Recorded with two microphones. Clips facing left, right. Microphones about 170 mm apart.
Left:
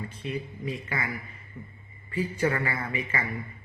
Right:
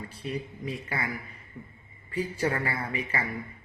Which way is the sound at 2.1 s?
35° right (ahead or behind).